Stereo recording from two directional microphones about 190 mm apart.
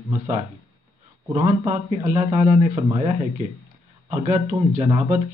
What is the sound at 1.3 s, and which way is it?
Speech, 35° right (ahead or behind).